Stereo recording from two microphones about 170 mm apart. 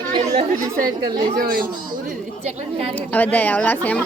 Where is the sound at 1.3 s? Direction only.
60° right (ahead or behind).